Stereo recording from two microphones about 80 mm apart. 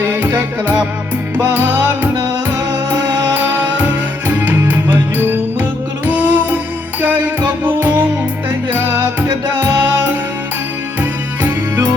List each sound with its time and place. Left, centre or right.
0.2 s music: right
3.3 s music: right
7.6 s music: right
11.4 s music: right